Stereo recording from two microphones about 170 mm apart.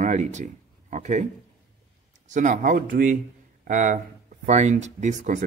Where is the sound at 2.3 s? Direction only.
45° right (ahead or behind).